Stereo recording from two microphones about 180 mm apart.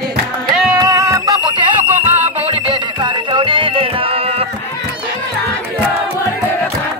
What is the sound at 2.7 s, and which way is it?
Music, 25° right (ahead or behind).